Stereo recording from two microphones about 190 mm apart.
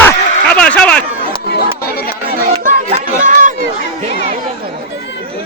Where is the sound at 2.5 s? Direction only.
40° right (ahead or behind).